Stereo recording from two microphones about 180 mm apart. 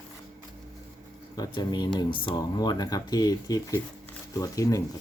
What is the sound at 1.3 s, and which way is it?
Speech, 20° left (ahead or behind).